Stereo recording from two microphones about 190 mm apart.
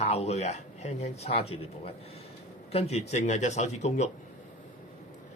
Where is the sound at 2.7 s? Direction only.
35° left (ahead or behind).